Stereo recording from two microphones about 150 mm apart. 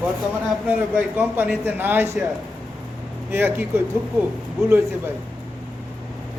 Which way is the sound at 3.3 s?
15° right (ahead or behind).